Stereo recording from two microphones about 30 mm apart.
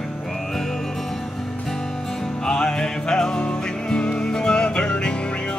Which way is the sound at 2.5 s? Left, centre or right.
Left.